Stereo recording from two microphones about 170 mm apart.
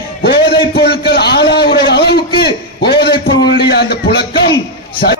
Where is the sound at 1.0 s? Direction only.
75° left (ahead or behind).